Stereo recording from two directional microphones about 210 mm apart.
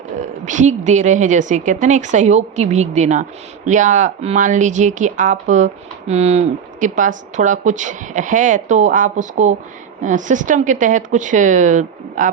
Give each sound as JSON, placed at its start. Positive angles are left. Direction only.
{"t": 0.4, "sound": "speech", "side_deg": -35}